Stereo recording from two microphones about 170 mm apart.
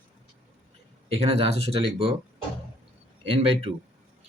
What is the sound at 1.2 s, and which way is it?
Speech, 35° right (ahead or behind).